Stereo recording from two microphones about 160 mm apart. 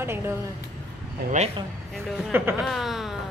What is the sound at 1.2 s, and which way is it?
Speech, 75° right (ahead or behind).